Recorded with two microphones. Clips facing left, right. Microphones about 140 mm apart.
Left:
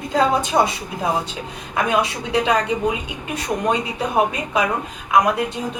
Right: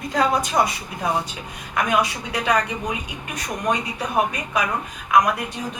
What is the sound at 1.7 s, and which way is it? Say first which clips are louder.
A woman's voice: left 1 dB; 25° left (ahead or behind).